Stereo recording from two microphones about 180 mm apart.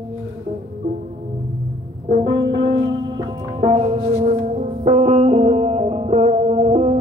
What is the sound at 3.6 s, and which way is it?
Music, 45° right (ahead or behind).